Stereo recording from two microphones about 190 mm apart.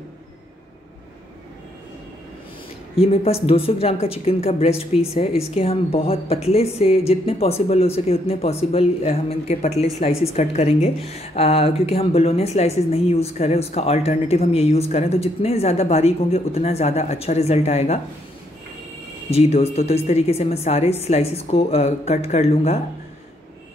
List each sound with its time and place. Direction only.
3.0 s a woman's voice: 30° left (ahead or behind)
19.3 s a woman's voice: 35° left (ahead or behind)